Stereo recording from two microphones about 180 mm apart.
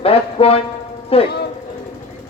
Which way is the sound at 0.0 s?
35° left (ahead or behind).